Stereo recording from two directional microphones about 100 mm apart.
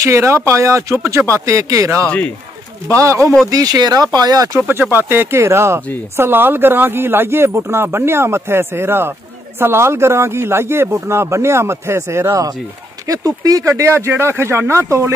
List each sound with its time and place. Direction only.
0.0 s speech: 30° right (ahead or behind)
2.0 s a man's voice: 15° left (ahead or behind)
2.9 s speech: 30° right (ahead or behind)
4.6 s speech: 20° right (ahead or behind)